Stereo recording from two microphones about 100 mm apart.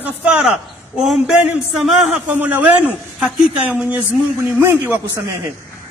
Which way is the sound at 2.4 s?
20° right (ahead or behind).